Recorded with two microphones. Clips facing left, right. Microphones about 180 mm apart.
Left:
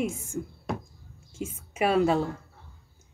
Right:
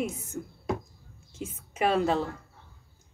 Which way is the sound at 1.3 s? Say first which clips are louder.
Left 3 dB; 10° left (ahead or behind).